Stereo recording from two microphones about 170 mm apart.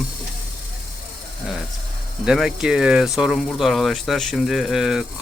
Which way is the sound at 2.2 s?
5° right (ahead or behind).